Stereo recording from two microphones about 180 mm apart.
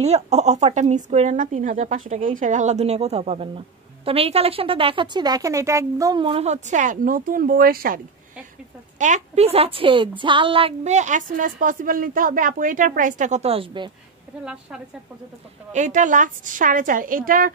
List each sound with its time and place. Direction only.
0.0 s speech: 35° right (ahead or behind); by 8.0 s 55° right (ahead or behind)
8.9 s a woman's voice: 40° right (ahead or behind)
14.4 s a woman's voice: 5° right (ahead or behind)
15.7 s a woman's voice: 45° right (ahead or behind)